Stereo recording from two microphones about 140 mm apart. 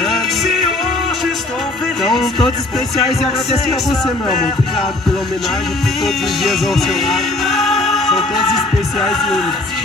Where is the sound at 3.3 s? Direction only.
Centre (ahead or behind).